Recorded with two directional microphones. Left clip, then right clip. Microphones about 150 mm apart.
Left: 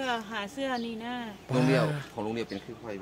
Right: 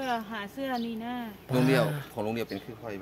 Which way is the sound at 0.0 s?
25° left (ahead or behind).